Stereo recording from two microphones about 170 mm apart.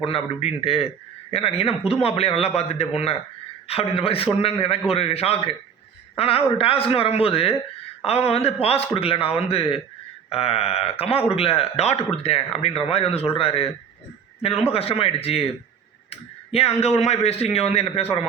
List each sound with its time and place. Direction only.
0.0 s speech: 35° left (ahead or behind)